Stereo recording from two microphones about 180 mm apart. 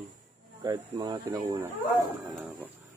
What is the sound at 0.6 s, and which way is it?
Speech, 20° right (ahead or behind).